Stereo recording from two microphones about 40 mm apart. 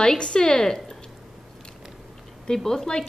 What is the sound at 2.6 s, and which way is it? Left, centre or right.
Speech, centre.